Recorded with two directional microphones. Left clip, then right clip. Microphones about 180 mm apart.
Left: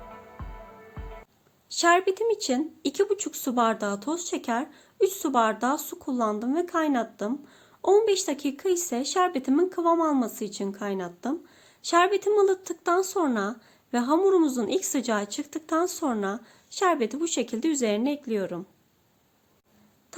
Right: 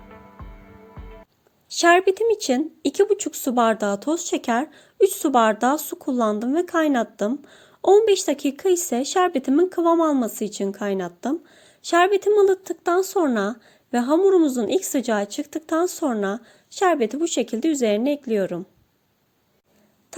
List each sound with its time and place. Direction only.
1.7 s speech: 30° right (ahead or behind)